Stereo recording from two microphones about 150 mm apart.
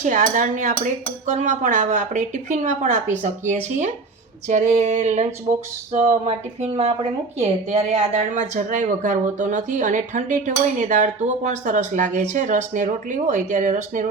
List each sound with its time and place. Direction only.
0.0 s a woman's voice: 55° right (ahead or behind)